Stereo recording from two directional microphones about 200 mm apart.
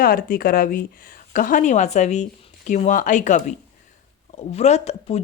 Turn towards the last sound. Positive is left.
turn(degrees=35)  # may be behind; listen again after turning